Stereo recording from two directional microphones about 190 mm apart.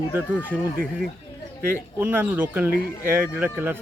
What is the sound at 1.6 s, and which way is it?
A man's voice, 10° right (ahead or behind).